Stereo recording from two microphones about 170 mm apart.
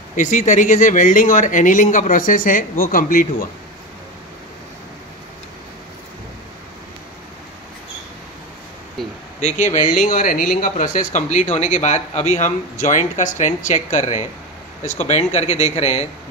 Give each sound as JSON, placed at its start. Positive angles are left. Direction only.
{"t": 0.1, "sound": "speech", "side_deg": 45}
{"t": 9.4, "sound": "speech", "side_deg": 45}